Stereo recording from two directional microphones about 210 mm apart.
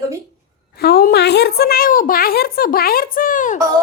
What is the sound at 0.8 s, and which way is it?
A woman's voice, 50° left (ahead or behind).